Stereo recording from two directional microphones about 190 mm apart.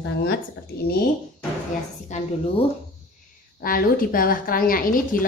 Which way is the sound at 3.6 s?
50° left (ahead or behind).